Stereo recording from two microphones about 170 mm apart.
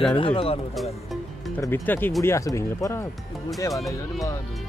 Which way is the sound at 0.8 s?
Centre (ahead or behind).